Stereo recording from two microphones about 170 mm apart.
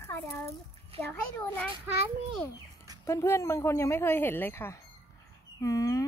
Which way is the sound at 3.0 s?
15° left (ahead or behind).